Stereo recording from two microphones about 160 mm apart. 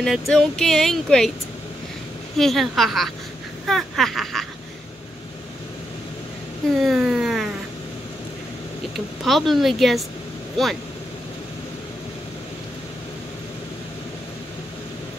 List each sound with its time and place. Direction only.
0.0 s speech: centre (ahead or behind)
2.3 s speech: centre (ahead or behind)
6.8 s a sound: 5° right (ahead or behind)
8.9 s speech: centre (ahead or behind)